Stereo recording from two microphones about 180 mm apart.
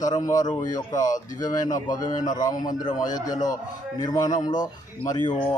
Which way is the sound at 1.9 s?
20° left (ahead or behind).